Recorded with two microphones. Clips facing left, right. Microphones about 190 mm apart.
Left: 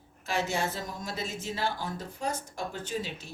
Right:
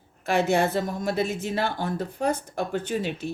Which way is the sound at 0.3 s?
60° right (ahead or behind).